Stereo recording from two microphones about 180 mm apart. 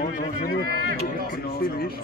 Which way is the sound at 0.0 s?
45° left (ahead or behind).